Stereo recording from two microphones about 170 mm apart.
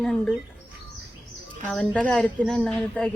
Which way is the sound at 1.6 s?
5° left (ahead or behind).